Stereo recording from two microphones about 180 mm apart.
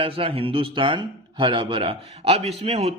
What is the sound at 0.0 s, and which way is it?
A man's voice, 30° right (ahead or behind).